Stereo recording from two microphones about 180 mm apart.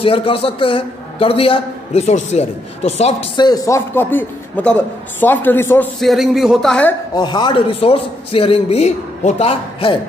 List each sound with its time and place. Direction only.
0.0 s a man's voice: 30° left (ahead or behind)
3.4 s a man's voice: 20° left (ahead or behind)
5.9 s speech: centre (ahead or behind)
7.2 s a man's voice: 25° left (ahead or behind)